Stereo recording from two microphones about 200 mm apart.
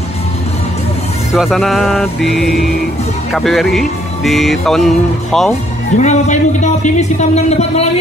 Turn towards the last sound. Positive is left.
turn(degrees=35)  # may be behind; listen again after turning